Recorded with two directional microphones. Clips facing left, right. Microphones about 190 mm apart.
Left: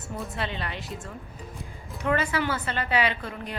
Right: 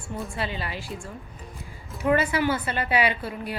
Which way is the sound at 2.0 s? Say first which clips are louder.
Right 4 dB; 10° right (ahead or behind).